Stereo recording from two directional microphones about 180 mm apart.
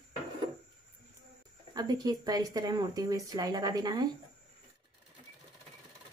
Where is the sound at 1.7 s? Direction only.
20° right (ahead or behind).